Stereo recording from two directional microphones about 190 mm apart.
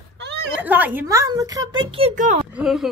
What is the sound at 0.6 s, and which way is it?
Speech, 10° right (ahead or behind).